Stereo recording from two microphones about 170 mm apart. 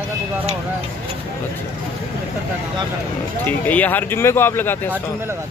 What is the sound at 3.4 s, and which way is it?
Speech, 10° left (ahead or behind).